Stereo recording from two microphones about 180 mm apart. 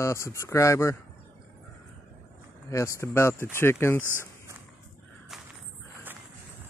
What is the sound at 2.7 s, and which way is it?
Speech, 15° left (ahead or behind).